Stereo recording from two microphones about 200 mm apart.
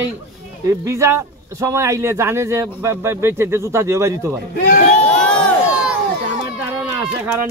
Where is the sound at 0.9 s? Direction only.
15° right (ahead or behind).